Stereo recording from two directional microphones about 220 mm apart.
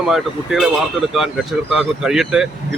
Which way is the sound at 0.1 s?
Centre (ahead or behind).